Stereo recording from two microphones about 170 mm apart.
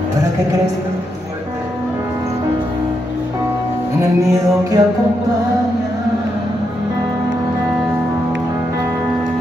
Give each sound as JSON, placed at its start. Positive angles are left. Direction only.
{"t": 4.0, "sound": "music", "side_deg": -20}